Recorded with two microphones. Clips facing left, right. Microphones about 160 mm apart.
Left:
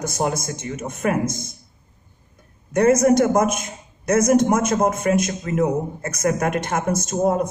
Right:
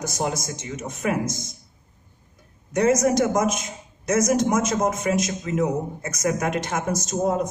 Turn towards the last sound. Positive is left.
turn(degrees=55)  # may be behind; listen again after turning